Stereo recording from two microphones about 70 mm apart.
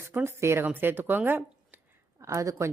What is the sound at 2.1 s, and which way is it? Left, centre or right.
Speech, right.